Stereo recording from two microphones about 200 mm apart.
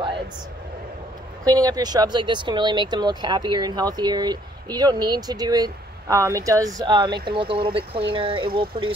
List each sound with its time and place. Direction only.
1.4 s speech: 20° right (ahead or behind)